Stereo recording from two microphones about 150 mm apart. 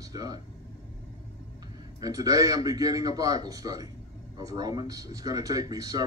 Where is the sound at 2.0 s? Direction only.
25° right (ahead or behind).